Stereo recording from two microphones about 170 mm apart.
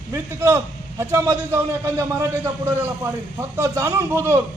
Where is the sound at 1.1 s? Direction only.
15° right (ahead or behind).